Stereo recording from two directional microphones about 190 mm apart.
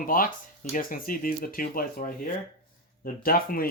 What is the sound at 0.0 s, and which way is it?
Speech, 45° left (ahead or behind).